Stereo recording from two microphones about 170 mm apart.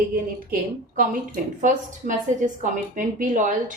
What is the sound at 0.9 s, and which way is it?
A woman's voice, 50° right (ahead or behind).